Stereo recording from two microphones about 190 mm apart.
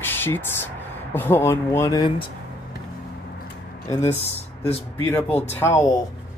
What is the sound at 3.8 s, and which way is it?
Speech, 15° left (ahead or behind).